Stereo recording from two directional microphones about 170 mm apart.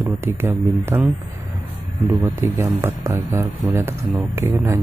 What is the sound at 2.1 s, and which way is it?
Speech, 15° right (ahead or behind).